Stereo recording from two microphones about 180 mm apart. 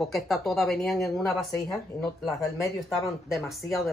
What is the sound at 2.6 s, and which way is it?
Speech, 20° left (ahead or behind).